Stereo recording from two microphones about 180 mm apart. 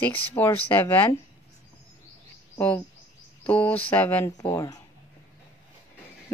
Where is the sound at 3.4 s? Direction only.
10° left (ahead or behind).